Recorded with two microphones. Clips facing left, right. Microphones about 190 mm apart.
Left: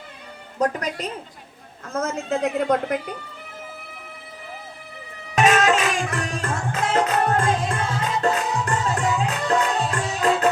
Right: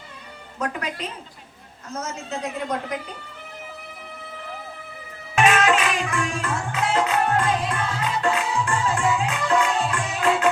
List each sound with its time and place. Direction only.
0.6 s speech: 40° left (ahead or behind)
1.9 s a woman's voice: 55° left (ahead or behind)
5.3 s music: 40° left (ahead or behind)